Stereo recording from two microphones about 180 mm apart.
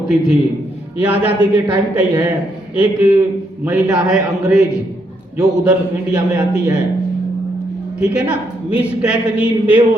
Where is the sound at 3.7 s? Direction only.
5° right (ahead or behind).